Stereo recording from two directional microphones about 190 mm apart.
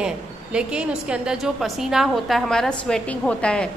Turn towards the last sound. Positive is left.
turn(degrees=5)  # may be behind; listen again after turning